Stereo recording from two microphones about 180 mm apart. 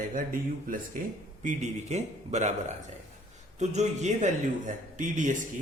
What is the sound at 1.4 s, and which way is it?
A man's voice, 40° right (ahead or behind).